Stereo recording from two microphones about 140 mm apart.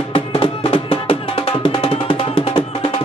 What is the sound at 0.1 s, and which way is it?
Music, 40° left (ahead or behind).